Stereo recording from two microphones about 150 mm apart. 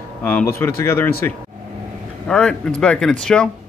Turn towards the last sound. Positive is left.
turn(degrees=5)  # may be behind; listen again after turning